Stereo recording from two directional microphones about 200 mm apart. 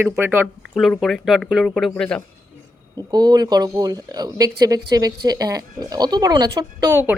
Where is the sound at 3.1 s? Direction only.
20° right (ahead or behind).